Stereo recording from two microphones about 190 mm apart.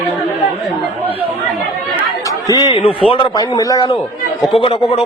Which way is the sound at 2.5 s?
25° left (ahead or behind).